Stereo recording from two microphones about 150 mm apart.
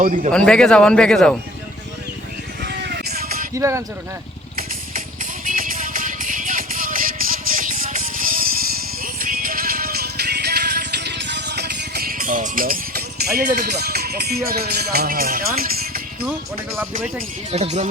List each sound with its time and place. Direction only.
0.0 s speech: 60° right (ahead or behind)
0.3 s speech: 5° left (ahead or behind)
2.6 s vehicle: 90° right
3.5 s speech: 20° right (ahead or behind)
5.5 s music: 65° right (ahead or behind); by 11.1 s 90° right
11.5 s speech: 90° right
17.5 s speech: 45° right (ahead or behind)